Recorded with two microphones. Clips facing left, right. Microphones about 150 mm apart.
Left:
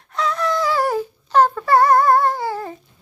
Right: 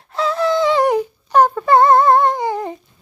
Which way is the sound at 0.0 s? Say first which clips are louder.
Right 4 dB; 30° right (ahead or behind).